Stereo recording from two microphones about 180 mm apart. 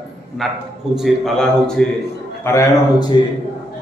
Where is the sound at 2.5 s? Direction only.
15° left (ahead or behind).